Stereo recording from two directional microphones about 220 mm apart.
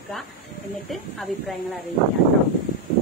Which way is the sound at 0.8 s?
Centre (ahead or behind).